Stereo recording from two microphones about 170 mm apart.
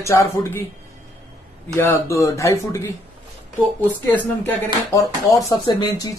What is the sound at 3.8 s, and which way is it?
Speech, 10° left (ahead or behind).